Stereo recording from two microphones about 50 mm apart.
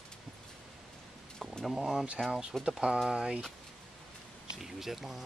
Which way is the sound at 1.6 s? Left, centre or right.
Centre.